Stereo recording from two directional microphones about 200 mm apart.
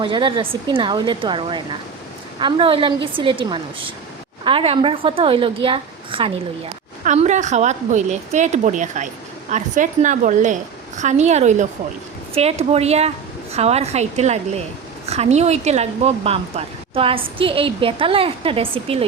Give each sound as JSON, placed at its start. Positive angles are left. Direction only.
{"t": 0.0, "sound": "speech", "side_deg": -25}
{"t": 7.0, "sound": "a woman's voice", "side_deg": -35}